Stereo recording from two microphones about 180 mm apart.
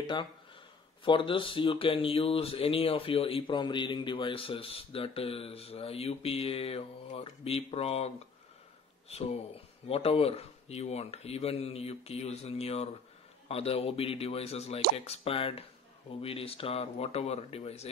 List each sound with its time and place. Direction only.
1.0 s speech: 30° left (ahead or behind)
9.1 s speech: 35° left (ahead or behind)